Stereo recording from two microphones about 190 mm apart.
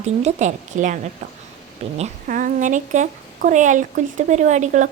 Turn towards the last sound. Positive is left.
turn(degrees=-40)  # may be behind; listen again after turning